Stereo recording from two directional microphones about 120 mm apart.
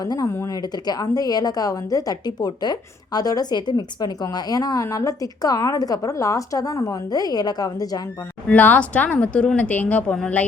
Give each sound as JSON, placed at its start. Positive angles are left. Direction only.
{"t": 0.0, "sound": "speech", "side_deg": 30}
{"t": 8.4, "sound": "speech", "side_deg": 10}